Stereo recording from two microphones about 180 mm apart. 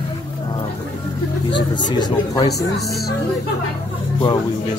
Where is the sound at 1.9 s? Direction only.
25° left (ahead or behind).